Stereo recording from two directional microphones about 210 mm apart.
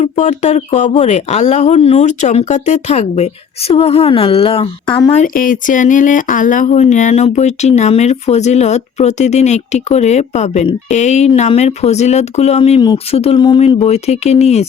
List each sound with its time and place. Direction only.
0.0 s speech: 35° left (ahead or behind)
5.2 s speech: 40° left (ahead or behind)